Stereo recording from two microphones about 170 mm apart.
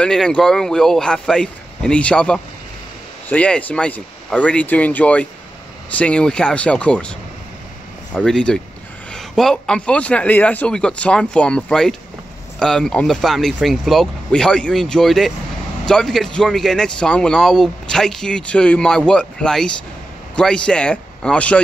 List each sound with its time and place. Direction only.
0.0 s speech: 5° left (ahead or behind)